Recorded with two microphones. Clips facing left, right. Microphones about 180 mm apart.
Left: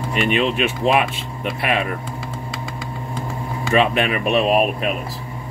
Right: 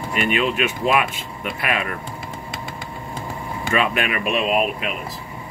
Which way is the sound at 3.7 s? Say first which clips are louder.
Left 4 dB; 30° left (ahead or behind).